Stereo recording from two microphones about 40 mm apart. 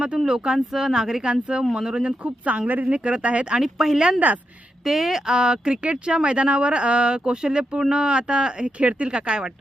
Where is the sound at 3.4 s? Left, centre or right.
Centre.